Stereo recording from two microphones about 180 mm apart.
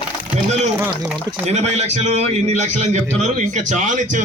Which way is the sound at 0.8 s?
5° right (ahead or behind).